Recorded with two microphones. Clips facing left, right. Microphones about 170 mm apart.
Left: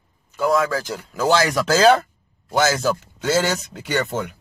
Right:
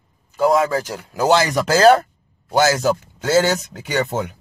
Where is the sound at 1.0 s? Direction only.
15° right (ahead or behind).